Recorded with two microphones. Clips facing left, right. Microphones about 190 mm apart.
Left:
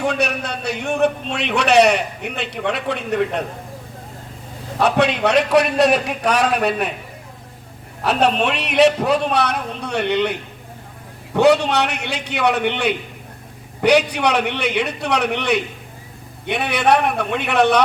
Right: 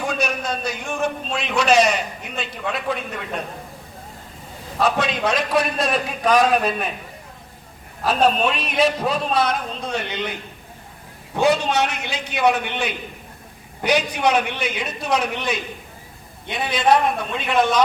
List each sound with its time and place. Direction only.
0.0 s a man's voice: 65° left (ahead or behind)
4.8 s a man's voice: 65° left (ahead or behind)
8.0 s a man's voice: 70° left (ahead or behind)